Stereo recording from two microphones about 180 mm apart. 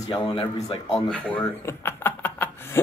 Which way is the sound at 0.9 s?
5° left (ahead or behind).